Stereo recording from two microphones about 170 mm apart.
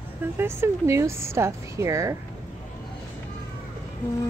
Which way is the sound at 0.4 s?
15° right (ahead or behind).